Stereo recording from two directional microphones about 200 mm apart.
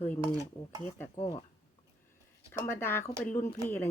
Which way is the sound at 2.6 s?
10° left (ahead or behind).